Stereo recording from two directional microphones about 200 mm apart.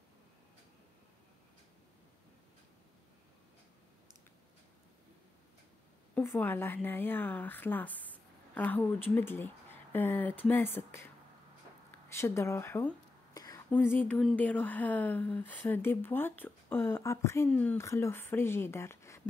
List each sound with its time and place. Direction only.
6.1 s speech: 10° left (ahead or behind)
12.1 s whispering: 15° left (ahead or behind)
13.7 s speech: 10° left (ahead or behind)